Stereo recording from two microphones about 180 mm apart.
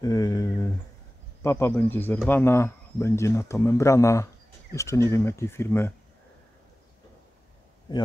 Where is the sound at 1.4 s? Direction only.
15° left (ahead or behind).